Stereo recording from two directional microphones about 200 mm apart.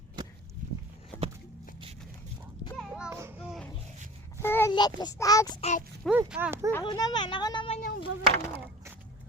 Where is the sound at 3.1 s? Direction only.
10° right (ahead or behind).